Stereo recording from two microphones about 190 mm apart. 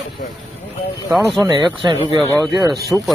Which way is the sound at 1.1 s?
Centre (ahead or behind).